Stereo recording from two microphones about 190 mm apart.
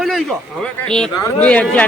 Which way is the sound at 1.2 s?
15° left (ahead or behind).